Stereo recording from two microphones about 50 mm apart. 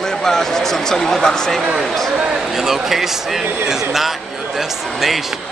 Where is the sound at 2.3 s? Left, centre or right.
Centre.